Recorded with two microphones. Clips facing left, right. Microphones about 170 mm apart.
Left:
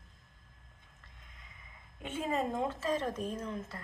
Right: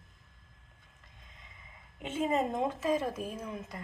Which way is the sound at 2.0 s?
20° right (ahead or behind).